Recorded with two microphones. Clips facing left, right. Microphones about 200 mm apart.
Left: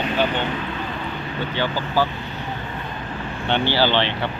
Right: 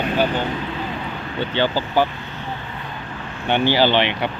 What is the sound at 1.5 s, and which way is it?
Speech, 25° right (ahead or behind).